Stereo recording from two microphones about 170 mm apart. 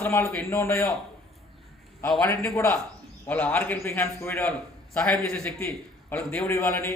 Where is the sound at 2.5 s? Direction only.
15° left (ahead or behind).